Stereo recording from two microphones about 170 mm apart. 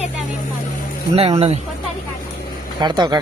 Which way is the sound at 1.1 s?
35° right (ahead or behind).